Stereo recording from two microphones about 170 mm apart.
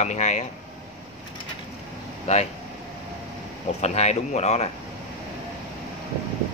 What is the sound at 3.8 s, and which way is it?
Speech, 40° left (ahead or behind).